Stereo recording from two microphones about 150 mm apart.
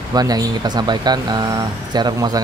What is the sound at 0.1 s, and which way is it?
Speech, 25° right (ahead or behind).